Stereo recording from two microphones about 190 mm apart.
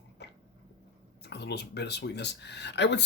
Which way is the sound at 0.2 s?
65° left (ahead or behind).